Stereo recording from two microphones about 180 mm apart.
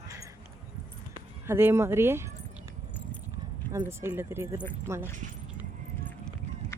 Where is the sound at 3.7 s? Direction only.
15° right (ahead or behind).